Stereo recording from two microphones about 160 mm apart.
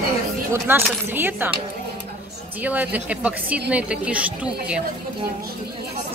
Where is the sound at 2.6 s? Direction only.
10° right (ahead or behind).